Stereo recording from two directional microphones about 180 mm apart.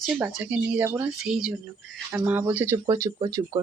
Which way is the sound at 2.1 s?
10° right (ahead or behind).